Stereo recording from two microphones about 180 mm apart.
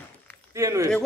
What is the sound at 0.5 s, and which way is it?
Speech, 15° right (ahead or behind).